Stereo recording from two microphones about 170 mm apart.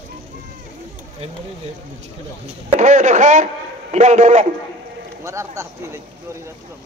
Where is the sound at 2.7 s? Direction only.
45° right (ahead or behind).